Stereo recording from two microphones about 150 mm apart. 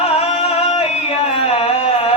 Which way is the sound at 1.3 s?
40° left (ahead or behind).